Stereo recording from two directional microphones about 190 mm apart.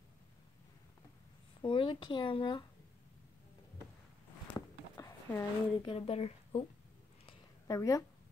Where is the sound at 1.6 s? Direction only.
25° left (ahead or behind).